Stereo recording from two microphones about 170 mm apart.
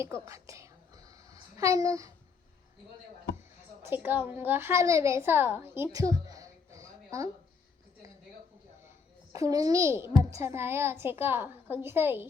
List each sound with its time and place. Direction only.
0.0 s whispering: 15° right (ahead or behind)
3.8 s a child's voice: 10° right (ahead or behind)
9.3 s a child's voice: 20° right (ahead or behind)